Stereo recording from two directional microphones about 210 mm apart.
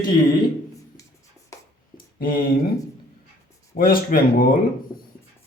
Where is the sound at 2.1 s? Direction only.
45° left (ahead or behind).